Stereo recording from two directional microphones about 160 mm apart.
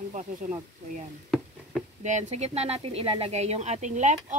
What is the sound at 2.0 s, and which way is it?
Speech, 45° right (ahead or behind).